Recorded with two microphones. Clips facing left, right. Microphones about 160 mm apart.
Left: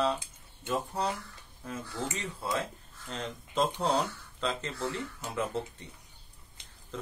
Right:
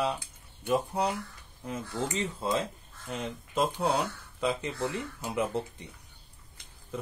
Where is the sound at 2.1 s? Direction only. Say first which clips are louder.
Right 6 dB; 20° right (ahead or behind).